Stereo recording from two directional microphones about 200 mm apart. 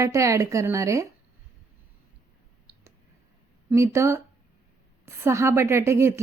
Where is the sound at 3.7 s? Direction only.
15° right (ahead or behind).